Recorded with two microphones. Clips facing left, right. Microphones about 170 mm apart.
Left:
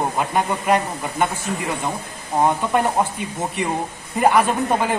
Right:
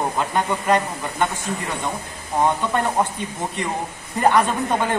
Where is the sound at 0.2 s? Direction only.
10° left (ahead or behind).